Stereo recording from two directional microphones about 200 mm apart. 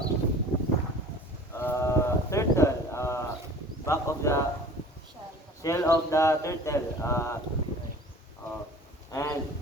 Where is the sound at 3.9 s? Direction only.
15° left (ahead or behind).